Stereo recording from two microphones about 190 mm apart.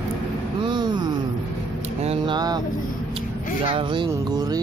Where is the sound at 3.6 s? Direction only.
25° right (ahead or behind).